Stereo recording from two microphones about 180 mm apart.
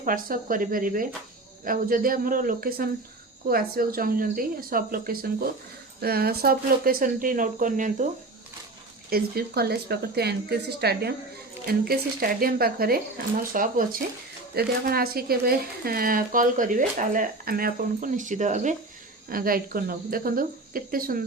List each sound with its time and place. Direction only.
0.0 s speech: 50° right (ahead or behind)
9.0 s speech: 60° right (ahead or behind); by 18.7 s 40° right (ahead or behind)
19.3 s speech: 55° right (ahead or behind)